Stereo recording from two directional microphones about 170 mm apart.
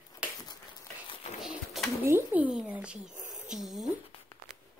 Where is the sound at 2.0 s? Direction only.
10° right (ahead or behind).